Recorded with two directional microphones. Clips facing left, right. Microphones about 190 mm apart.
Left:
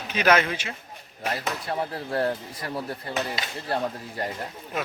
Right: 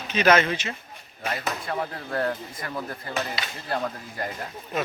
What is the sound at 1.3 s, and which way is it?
Speech, 30° left (ahead or behind).